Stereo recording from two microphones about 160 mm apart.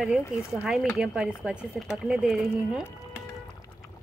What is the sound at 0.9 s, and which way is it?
Speech, 5° right (ahead or behind).